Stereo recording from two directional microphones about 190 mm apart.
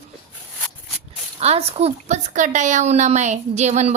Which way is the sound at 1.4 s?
35° right (ahead or behind).